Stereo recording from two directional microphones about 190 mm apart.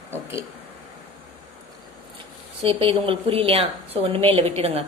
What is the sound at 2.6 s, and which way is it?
A woman's voice, 30° right (ahead or behind).